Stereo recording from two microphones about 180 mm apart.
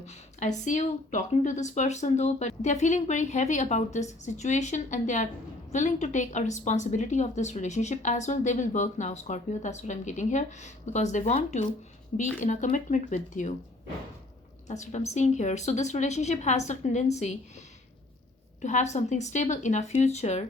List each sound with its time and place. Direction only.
0.0 s a woman's voice: 40° left (ahead or behind)
14.7 s a woman's voice: 40° left (ahead or behind)
18.6 s a woman's voice: 40° left (ahead or behind)